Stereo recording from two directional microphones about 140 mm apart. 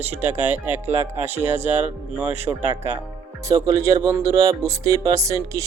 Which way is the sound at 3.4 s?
25° right (ahead or behind).